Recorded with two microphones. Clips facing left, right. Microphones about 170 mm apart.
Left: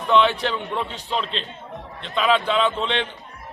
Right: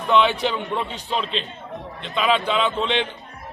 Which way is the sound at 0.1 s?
5° right (ahead or behind).